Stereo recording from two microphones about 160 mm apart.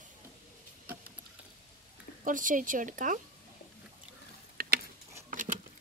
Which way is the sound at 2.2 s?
55° right (ahead or behind).